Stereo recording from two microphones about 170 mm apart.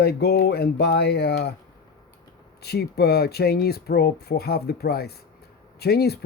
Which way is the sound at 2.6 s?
70° left (ahead or behind).